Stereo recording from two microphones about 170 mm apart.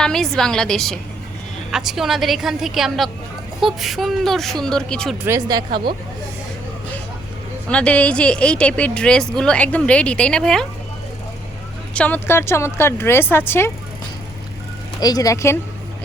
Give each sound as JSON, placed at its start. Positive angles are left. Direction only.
{"t": 0.0, "sound": "a woman's voice", "side_deg": 5}
{"t": 5.2, "sound": "speech", "side_deg": -20}
{"t": 7.7, "sound": "a woman's voice", "side_deg": 5}
{"t": 11.9, "sound": "a woman's voice", "side_deg": 10}
{"t": 15.0, "sound": "speech", "side_deg": 20}